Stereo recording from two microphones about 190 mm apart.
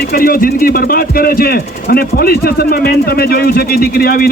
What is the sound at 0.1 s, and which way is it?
Speech, 50° left (ahead or behind).